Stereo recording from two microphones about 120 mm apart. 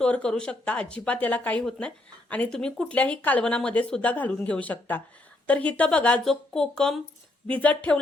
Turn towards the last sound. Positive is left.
turn(degrees=10)  # may be behind; listen again after turning